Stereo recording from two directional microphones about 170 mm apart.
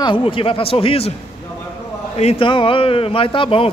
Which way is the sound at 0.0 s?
30° left (ahead or behind).